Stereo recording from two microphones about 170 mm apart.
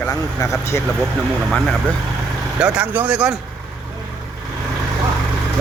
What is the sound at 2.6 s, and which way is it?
Speech, 5° right (ahead or behind).